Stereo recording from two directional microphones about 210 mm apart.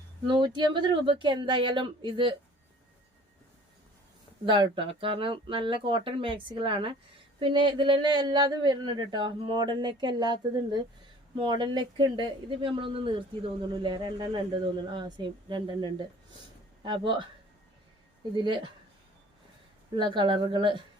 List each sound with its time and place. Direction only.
0.3 s speech: 20° right (ahead or behind)
4.4 s speech: 25° right (ahead or behind)
18.3 s speech: 25° right (ahead or behind)
20.0 s speech: 20° right (ahead or behind)